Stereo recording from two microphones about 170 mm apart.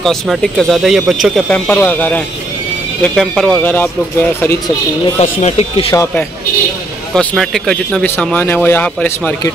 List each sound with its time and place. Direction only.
0.0 s speech: centre (ahead or behind)
1.5 s speech: 10° left (ahead or behind)
5.2 s speech: 40° left (ahead or behind)
7.2 s speech: centre (ahead or behind)